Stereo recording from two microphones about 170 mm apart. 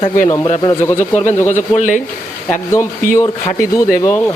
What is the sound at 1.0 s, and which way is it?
Speech, 45° left (ahead or behind).